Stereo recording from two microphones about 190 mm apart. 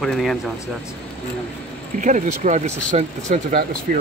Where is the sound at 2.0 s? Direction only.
40° right (ahead or behind).